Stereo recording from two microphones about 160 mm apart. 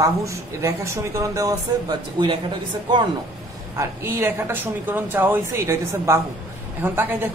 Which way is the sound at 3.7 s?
15° right (ahead or behind).